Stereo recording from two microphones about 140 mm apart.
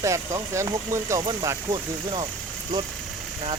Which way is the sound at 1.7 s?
35° right (ahead or behind).